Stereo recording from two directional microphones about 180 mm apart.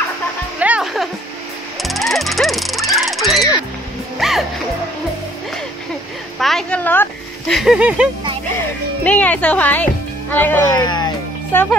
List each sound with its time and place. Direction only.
0.6 s music: 5° right (ahead or behind)
6.4 s speech: 5° left (ahead or behind)
9.0 s speech: 10° left (ahead or behind)
10.7 s speech: 25° left (ahead or behind)